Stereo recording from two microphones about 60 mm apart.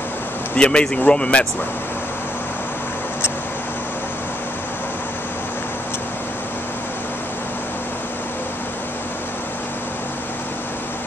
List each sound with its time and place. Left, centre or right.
0.6 s a man's voice: centre